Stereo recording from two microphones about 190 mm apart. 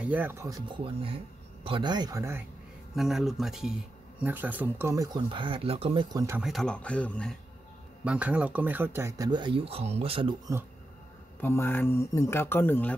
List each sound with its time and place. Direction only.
0.0 s speech: 10° right (ahead or behind)
3.0 s speech: centre (ahead or behind); by 6.0 s 30° right (ahead or behind)
6.1 s speech: 15° right (ahead or behind)
6.4 s speech: centre (ahead or behind)
8.0 s speech: 5° right (ahead or behind); by 10.3 s 30° right (ahead or behind)
11.4 s speech: 10° left (ahead or behind)